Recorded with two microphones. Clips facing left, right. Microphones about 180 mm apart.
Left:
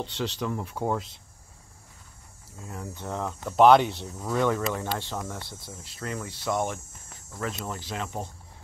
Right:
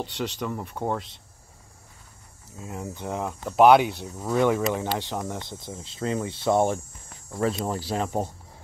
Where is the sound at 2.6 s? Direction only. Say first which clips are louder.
Right 4 dB; 20° right (ahead or behind).